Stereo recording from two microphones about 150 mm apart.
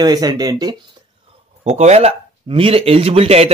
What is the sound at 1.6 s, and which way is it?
Speech, 45° right (ahead or behind).